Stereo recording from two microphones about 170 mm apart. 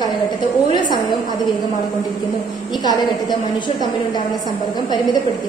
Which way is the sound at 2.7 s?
25° left (ahead or behind).